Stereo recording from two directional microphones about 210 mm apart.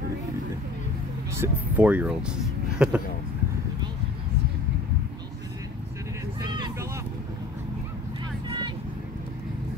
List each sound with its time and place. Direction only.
1.3 s speech: 10° right (ahead or behind)
6.5 s vehicle: 20° right (ahead or behind)
8.5 s vehicle: 20° right (ahead or behind)